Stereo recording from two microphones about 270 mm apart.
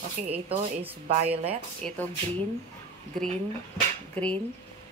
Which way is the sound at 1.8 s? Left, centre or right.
Centre.